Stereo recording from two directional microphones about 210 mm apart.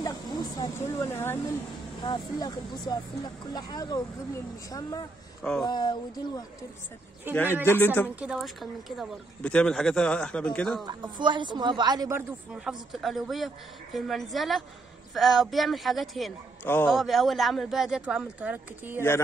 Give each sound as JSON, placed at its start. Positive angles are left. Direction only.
{"t": 0.0, "sound": "a sound", "side_deg": 15}
{"t": 2.0, "sound": "speech", "side_deg": 20}
{"t": 7.6, "sound": "speech", "side_deg": 10}
{"t": 8.2, "sound": "speech", "side_deg": 0}
{"t": 10.9, "sound": "speech", "side_deg": -20}
{"t": 18.9, "sound": "speech", "side_deg": 10}